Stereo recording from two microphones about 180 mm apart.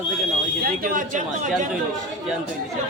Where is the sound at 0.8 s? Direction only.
50° right (ahead or behind).